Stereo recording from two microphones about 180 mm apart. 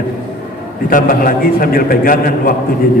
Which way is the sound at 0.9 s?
50° left (ahead or behind).